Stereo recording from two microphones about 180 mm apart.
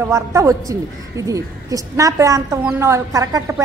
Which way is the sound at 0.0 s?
15° right (ahead or behind).